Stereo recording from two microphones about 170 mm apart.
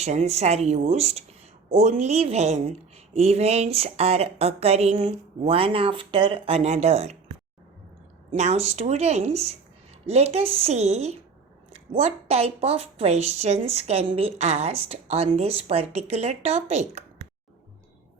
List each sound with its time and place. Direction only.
0.0 s speech: 40° right (ahead or behind)
8.3 s speech: 40° right (ahead or behind)